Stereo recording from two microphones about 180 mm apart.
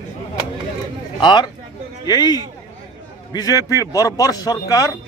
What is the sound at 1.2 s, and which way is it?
Speech, 25° left (ahead or behind).